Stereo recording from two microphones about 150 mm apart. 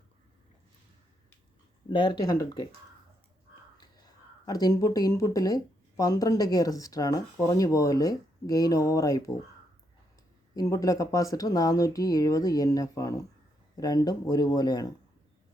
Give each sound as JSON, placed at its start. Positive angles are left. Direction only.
{"t": 1.9, "sound": "speech", "side_deg": 35}
{"t": 4.4, "sound": "speech", "side_deg": 25}
{"t": 10.5, "sound": "speech", "side_deg": 25}